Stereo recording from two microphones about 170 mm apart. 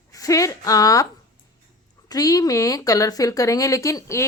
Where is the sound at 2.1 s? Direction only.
20° left (ahead or behind).